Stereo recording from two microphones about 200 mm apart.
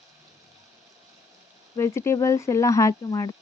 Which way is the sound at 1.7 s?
15° left (ahead or behind).